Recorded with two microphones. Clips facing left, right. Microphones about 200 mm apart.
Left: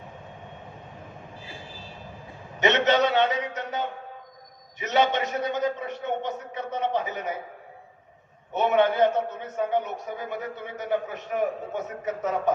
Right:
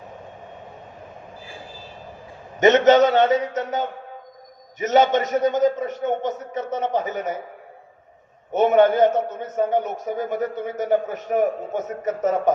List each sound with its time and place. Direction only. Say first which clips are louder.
2.6 s a man's voice: right 8 dB; 45° right (ahead or behind)
8.5 s a man's voice: right 6 dB; 45° right (ahead or behind)